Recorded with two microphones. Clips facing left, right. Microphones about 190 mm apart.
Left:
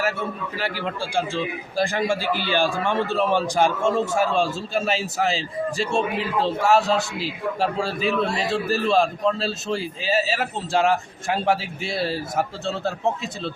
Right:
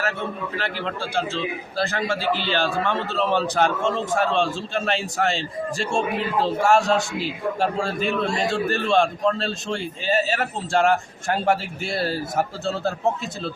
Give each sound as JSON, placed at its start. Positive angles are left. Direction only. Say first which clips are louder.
{"t": 0.0, "sound": "a man's voice", "louder": "left 1 dB", "side_deg": 10}